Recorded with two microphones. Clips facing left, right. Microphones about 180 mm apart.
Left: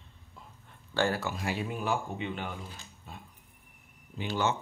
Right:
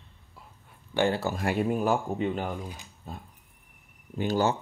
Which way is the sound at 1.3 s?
50° right (ahead or behind).